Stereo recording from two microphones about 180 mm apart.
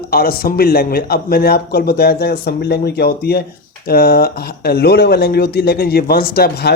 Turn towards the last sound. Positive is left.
turn(degrees=60)  # may be behind; listen again after turning